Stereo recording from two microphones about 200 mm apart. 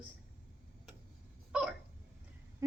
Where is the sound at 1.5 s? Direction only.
5° right (ahead or behind).